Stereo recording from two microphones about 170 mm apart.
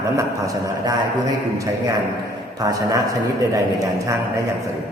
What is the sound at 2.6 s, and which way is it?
Speech, 20° right (ahead or behind).